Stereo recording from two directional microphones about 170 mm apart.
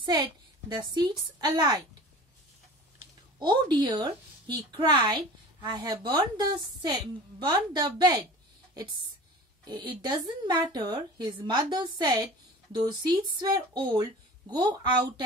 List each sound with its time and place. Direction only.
0.0 s a woman's voice: 25° right (ahead or behind)
3.3 s a woman's voice: 25° right (ahead or behind)
9.7 s a woman's voice: 25° right (ahead or behind)